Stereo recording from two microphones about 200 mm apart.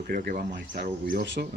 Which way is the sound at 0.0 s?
45° right (ahead or behind).